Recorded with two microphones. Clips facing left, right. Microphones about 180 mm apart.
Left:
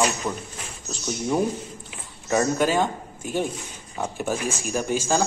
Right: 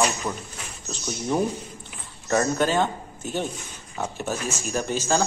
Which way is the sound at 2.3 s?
10° left (ahead or behind).